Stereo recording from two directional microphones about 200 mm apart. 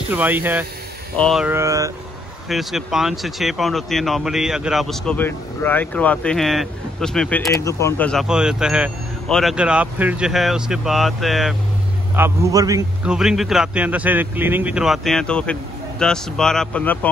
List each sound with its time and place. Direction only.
0.1 s a man's voice: 10° right (ahead or behind)
1.1 s speech: centre (ahead or behind)
1.5 s a man's voice: 15° right (ahead or behind)
2.4 s speech: centre (ahead or behind); by 8.1 s 15° left (ahead or behind)
8.1 s speech: centre (ahead or behind)
12.2 s a man's voice: 15° right (ahead or behind)
13.0 s speech: 5° right (ahead or behind)